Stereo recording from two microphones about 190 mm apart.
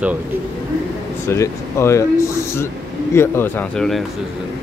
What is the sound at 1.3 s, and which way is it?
Speech, 15° left (ahead or behind).